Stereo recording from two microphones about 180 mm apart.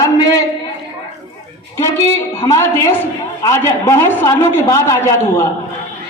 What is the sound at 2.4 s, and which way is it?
Speech, 30° left (ahead or behind).